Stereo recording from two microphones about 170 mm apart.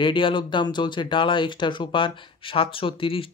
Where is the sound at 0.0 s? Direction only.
30° left (ahead or behind).